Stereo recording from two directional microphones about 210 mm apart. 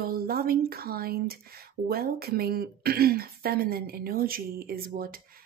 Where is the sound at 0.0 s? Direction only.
45° right (ahead or behind).